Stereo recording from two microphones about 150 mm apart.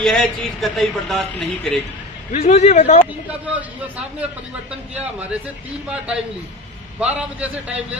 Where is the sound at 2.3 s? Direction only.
50° left (ahead or behind).